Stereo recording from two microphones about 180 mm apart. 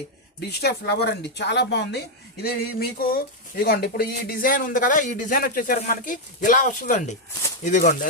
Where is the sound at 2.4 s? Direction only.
55° left (ahead or behind).